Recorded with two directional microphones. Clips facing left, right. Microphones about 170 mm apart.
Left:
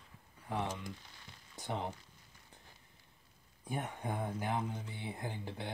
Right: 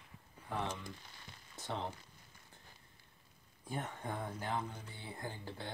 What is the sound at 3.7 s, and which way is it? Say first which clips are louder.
Speech: left 2 dB; 15° left (ahead or behind).